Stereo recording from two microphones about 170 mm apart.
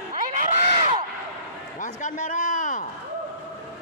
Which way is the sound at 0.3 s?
45° right (ahead or behind).